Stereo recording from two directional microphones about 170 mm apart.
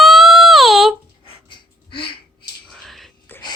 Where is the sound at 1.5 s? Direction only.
30° left (ahead or behind).